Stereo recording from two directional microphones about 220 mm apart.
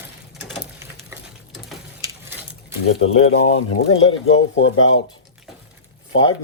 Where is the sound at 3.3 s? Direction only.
60° left (ahead or behind).